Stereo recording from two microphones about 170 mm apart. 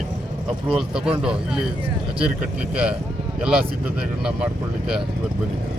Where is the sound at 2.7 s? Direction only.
5° right (ahead or behind).